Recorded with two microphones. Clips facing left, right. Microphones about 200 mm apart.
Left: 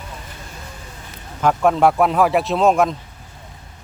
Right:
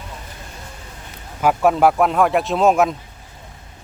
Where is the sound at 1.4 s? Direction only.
5° right (ahead or behind).